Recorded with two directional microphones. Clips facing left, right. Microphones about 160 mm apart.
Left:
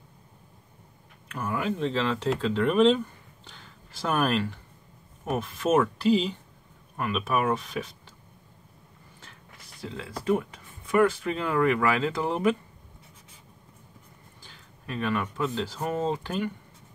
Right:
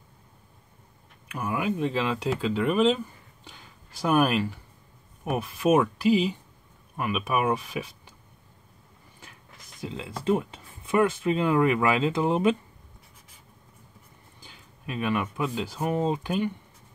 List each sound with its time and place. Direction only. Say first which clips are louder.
1.3 s speech: right 1 dB; 10° right (ahead or behind)
4.0 s speech: right 3 dB; 10° right (ahead or behind)
9.8 s speech: right 1 dB; 20° right (ahead or behind)
14.4 s speech: right 6 dB; 15° right (ahead or behind)